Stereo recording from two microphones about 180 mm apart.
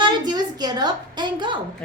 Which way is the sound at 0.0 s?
25° right (ahead or behind).